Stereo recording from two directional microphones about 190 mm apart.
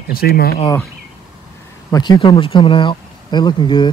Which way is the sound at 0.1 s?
55° left (ahead or behind).